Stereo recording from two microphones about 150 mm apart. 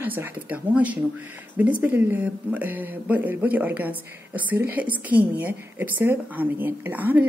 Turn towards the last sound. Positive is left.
turn(degrees=-10)  # may be behind; listen again after turning